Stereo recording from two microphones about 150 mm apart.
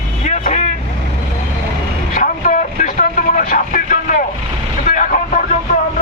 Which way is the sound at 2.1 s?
60° left (ahead or behind).